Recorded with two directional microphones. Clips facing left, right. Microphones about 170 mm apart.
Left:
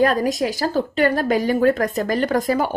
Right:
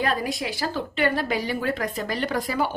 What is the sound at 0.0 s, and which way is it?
A woman's voice, 45° left (ahead or behind).